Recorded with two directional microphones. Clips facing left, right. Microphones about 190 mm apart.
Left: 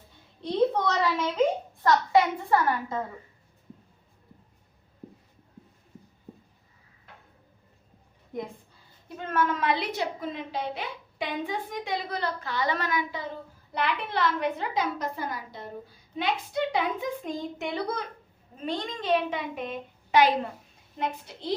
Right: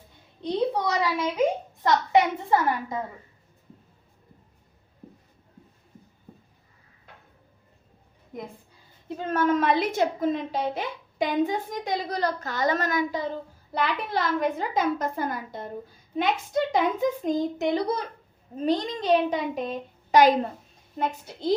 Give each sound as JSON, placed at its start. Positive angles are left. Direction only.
{"t": 0.4, "sound": "a sound", "side_deg": -15}
{"t": 8.3, "sound": "a woman's voice", "side_deg": 0}
{"t": 9.0, "sound": "a woman's voice", "side_deg": -35}